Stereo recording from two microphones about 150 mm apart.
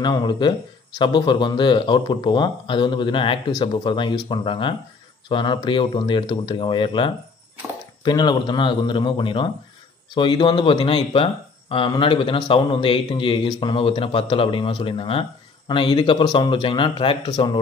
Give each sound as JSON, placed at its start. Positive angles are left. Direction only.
{"t": 0.0, "sound": "speech", "side_deg": 30}